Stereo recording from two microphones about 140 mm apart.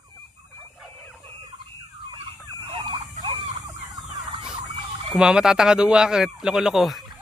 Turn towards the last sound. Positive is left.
turn(degrees=0)  # may be behind; listen again after turning